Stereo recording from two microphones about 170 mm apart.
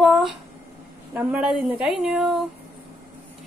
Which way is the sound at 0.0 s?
Centre (ahead or behind).